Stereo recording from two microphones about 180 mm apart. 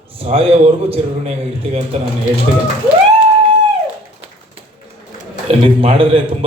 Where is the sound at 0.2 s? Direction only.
35° right (ahead or behind).